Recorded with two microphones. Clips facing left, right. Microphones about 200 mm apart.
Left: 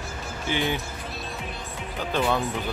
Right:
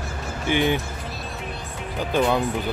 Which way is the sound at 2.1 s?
15° right (ahead or behind).